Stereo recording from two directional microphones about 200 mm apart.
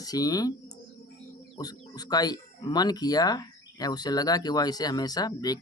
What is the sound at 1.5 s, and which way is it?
Speech, 20° left (ahead or behind).